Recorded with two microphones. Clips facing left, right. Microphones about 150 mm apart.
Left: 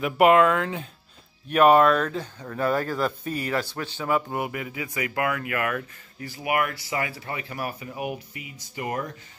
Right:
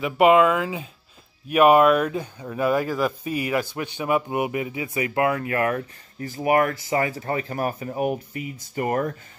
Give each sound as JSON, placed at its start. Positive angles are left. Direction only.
{"t": 0.0, "sound": "speech", "side_deg": 0}